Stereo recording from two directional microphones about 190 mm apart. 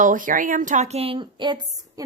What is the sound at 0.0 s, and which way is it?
A woman's voice, 45° right (ahead or behind).